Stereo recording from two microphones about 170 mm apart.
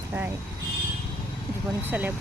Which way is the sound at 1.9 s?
10° right (ahead or behind).